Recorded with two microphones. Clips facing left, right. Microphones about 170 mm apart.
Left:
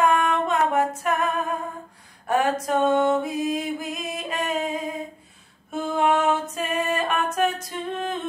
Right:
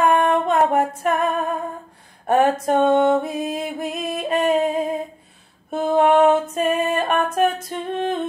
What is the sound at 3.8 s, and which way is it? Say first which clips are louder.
Music: right 6 dB; 60° right (ahead or behind).